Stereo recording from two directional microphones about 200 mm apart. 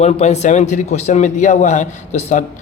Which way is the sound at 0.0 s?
35° left (ahead or behind).